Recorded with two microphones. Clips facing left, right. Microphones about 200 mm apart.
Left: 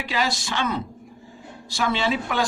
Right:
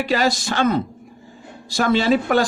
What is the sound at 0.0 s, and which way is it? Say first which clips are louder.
Speech: right 7 dB; 45° right (ahead or behind).